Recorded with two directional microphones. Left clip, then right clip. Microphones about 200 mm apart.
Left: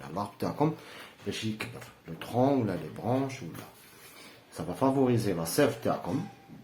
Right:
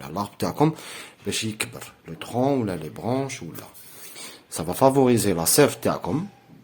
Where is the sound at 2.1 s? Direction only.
35° right (ahead or behind).